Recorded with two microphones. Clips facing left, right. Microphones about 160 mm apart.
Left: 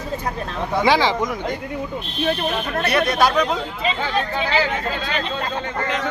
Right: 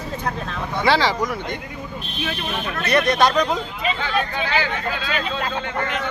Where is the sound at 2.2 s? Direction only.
40° left (ahead or behind).